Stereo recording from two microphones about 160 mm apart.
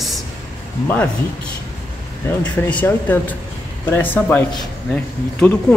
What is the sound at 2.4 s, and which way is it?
Speech, 10° left (ahead or behind).